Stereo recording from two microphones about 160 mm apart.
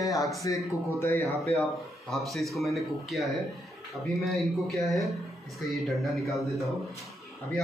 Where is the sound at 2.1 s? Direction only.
Centre (ahead or behind).